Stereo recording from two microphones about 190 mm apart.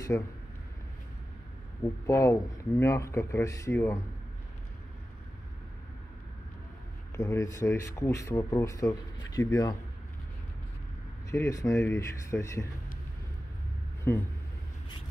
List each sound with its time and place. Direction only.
0.1 s speech: 10° left (ahead or behind)
2.0 s speech: 15° left (ahead or behind)
7.2 s speech: 15° left (ahead or behind)
11.2 s speech: 15° left (ahead or behind)
14.1 s speech: 10° left (ahead or behind)